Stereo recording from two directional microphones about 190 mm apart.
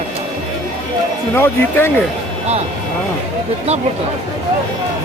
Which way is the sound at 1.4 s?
10° left (ahead or behind).